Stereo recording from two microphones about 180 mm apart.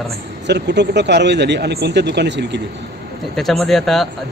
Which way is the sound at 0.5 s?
70° right (ahead or behind).